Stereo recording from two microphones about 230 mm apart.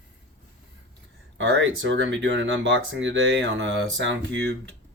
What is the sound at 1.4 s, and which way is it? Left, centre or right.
Speech, right.